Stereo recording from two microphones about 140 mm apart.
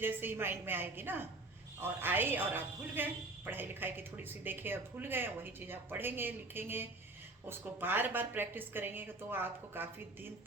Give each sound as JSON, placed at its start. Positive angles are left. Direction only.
{"t": 0.0, "sound": "a woman's voice", "side_deg": -15}